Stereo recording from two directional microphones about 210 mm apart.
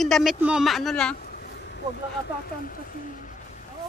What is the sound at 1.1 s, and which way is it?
Vehicle, 45° left (ahead or behind).